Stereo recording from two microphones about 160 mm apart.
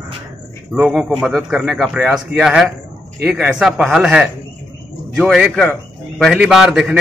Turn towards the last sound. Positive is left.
turn(degrees=0)  # may be behind; listen again after turning